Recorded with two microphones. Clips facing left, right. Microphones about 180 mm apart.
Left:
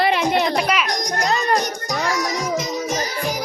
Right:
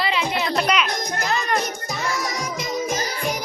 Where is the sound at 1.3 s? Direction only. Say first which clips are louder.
Left 3 dB; 35° left (ahead or behind).